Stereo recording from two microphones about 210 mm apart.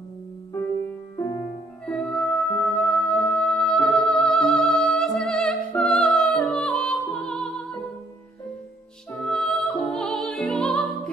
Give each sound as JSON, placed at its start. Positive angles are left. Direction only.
{"t": 1.1, "sound": "music", "side_deg": 15}
{"t": 1.9, "sound": "music", "side_deg": 5}
{"t": 9.1, "sound": "music", "side_deg": 5}